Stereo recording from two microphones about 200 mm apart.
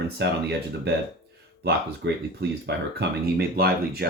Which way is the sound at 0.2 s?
55° right (ahead or behind).